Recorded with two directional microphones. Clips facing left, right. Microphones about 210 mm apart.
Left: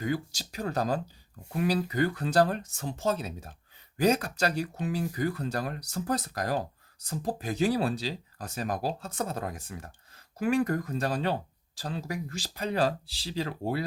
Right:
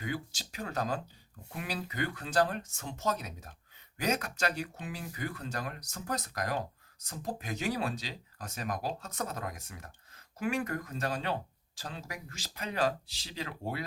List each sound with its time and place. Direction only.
0.0 s speech: 40° left (ahead or behind)